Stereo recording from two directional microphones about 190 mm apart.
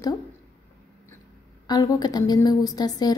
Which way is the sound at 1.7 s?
20° left (ahead or behind).